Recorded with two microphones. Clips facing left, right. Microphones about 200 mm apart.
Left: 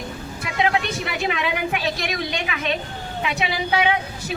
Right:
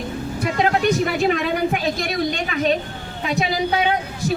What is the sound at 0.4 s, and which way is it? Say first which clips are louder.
A woman's voice: right 4 dB; 40° right (ahead or behind).